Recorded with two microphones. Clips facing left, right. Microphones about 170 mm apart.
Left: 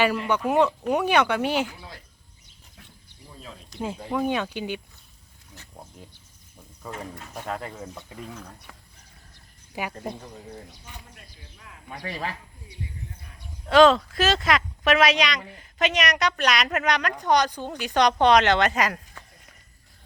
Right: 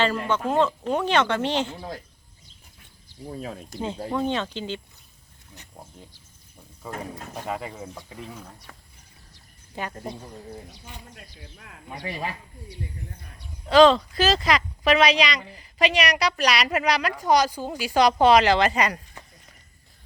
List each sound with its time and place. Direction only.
0.0 s speech: 10° left (ahead or behind)
3.3 s speech: 55° right (ahead or behind)
4.1 s speech: 10° left (ahead or behind)
5.7 s speech: centre (ahead or behind)
7.3 s speech: 5° right (ahead or behind)
9.7 s speech: 10° left (ahead or behind)
12.0 s speech: 20° right (ahead or behind)
13.7 s speech: centre (ahead or behind)